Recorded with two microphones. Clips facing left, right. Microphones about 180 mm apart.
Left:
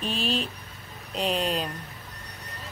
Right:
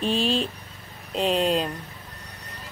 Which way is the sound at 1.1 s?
Centre (ahead or behind).